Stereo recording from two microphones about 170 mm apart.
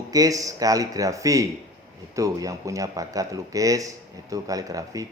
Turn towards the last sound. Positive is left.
turn(degrees=-20)  # may be behind; listen again after turning